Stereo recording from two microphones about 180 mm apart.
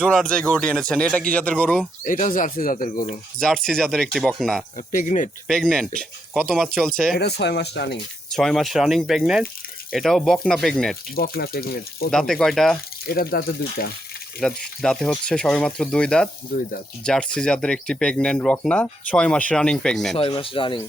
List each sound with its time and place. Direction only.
0.1 s speech: 5° left (ahead or behind)
2.0 s speech: 45° left (ahead or behind)
3.3 s speech: 5° left (ahead or behind)
4.9 s speech: 45° left (ahead or behind)
5.5 s speech: centre (ahead or behind)
7.2 s speech: 65° left (ahead or behind)
8.3 s speech: centre (ahead or behind)
11.1 s speech: 55° left (ahead or behind)
12.1 s speech: centre (ahead or behind)
13.1 s speech: 55° left (ahead or behind)
14.4 s speech: centre (ahead or behind)
20.1 s speech: 30° left (ahead or behind)